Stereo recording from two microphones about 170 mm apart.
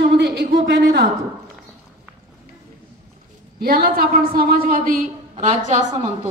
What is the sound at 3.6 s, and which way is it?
A woman's voice, 60° right (ahead or behind).